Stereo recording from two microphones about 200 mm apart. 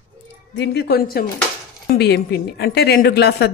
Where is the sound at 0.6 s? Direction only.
55° left (ahead or behind).